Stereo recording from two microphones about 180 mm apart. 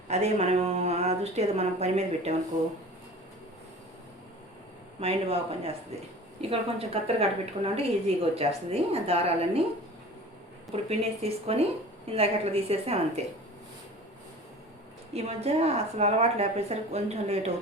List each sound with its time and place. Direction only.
0.1 s a woman's voice: 40° right (ahead or behind)
4.9 s a woman's voice: 35° right (ahead or behind)
10.7 s a woman's voice: 35° right (ahead or behind)
15.1 s a woman's voice: 35° right (ahead or behind)